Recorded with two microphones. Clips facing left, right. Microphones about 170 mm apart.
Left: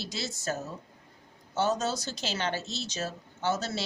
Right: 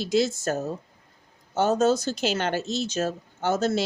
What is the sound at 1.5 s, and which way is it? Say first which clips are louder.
Speech: right 7 dB; 50° right (ahead or behind).